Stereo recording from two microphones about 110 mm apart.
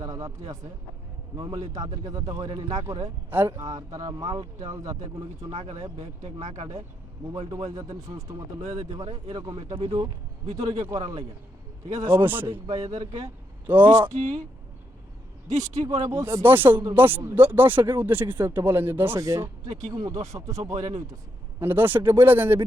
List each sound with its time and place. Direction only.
0.0 s a sound: 30° right (ahead or behind)
1.4 s speech: 35° right (ahead or behind)
3.2 s speech: 20° right (ahead or behind)
3.7 s speech: 35° right (ahead or behind)
5.5 s speech: 60° right (ahead or behind)
5.7 s speech: 30° right (ahead or behind)
6.2 s speech: 80° right
7.3 s speech: 35° right (ahead or behind)
11.9 s speech: 20° right (ahead or behind)
12.6 s speech: 35° right (ahead or behind)
13.7 s a man's voice: 15° right (ahead or behind)
14.2 s speech: 90° right
15.4 s speech: 30° right (ahead or behind)
21.6 s speech: 20° right (ahead or behind)